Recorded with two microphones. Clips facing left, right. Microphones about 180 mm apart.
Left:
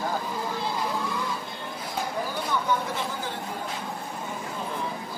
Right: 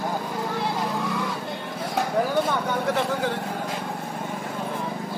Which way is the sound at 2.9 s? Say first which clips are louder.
Right 8 dB; 70° right (ahead or behind).